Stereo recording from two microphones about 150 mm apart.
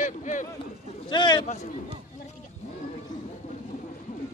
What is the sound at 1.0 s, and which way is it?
Speech, 30° left (ahead or behind).